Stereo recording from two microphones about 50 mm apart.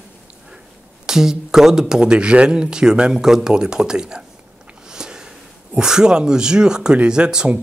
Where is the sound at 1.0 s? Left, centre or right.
Centre.